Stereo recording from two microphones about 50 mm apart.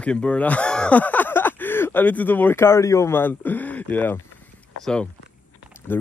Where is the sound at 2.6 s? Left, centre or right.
Left.